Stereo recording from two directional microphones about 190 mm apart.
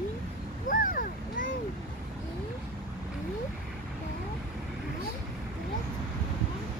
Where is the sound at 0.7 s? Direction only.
45° left (ahead or behind).